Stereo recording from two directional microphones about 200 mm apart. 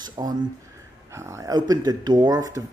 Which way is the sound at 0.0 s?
20° right (ahead or behind).